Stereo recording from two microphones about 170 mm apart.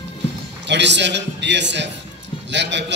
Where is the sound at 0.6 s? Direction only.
90° right.